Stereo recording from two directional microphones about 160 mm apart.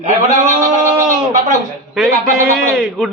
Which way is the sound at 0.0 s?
50° right (ahead or behind).